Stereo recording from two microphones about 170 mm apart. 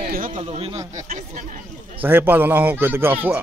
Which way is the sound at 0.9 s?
45° right (ahead or behind).